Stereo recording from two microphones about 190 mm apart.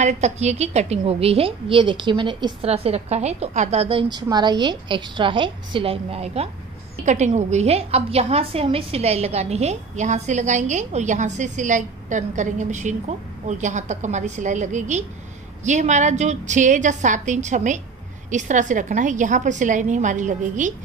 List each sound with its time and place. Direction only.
0.0 s a woman's voice: 35° right (ahead or behind)
4.1 s a woman's voice: 20° right (ahead or behind); by 20.7 s 40° right (ahead or behind)